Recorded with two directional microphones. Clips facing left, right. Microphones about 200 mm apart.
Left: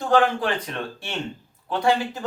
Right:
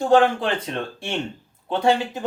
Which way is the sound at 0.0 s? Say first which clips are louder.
Right 3 dB; 25° right (ahead or behind).